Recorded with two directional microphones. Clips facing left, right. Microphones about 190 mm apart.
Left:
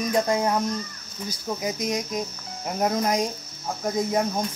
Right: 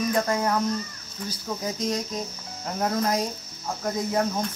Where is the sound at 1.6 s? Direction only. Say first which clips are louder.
Even; 10° left (ahead or behind).